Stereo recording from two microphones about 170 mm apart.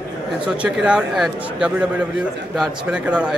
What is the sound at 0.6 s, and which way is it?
Speech, 5° right (ahead or behind).